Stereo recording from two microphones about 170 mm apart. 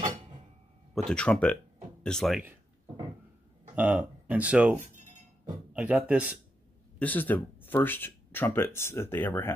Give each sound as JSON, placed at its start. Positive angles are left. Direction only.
{"t": 0.9, "sound": "speech", "side_deg": 5}
{"t": 3.7, "sound": "a man's voice", "side_deg": -10}
{"t": 7.0, "sound": "speech", "side_deg": 10}